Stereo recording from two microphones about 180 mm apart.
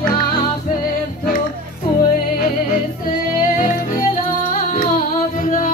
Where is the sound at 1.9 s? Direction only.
50° left (ahead or behind).